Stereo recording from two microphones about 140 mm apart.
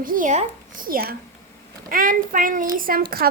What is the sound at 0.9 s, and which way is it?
Speech, 90° right.